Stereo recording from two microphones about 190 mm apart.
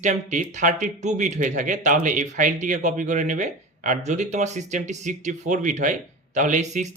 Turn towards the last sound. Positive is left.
turn(degrees=-40)  # may be behind; listen again after turning